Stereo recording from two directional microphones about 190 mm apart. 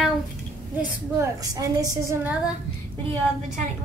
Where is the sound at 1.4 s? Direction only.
20° right (ahead or behind).